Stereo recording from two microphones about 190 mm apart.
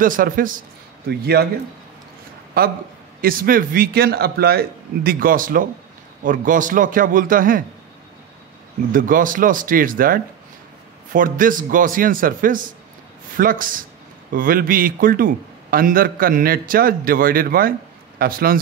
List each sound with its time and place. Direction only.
0.0 s a man's voice: 45° right (ahead or behind)
1.0 s speech: 55° right (ahead or behind)
2.6 s a man's voice: 50° right (ahead or behind)
8.9 s a man's voice: 45° right (ahead or behind)